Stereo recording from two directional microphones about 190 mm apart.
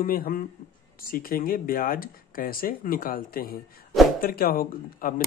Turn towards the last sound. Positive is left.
turn(degrees=45)  # may be behind; listen again after turning